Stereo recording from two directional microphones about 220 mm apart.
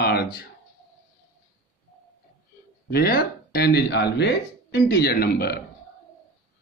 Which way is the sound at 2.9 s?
45° left (ahead or behind).